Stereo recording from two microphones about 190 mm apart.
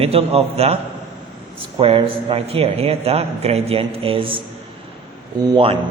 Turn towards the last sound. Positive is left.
turn(degrees=-30)  # may be behind; listen again after turning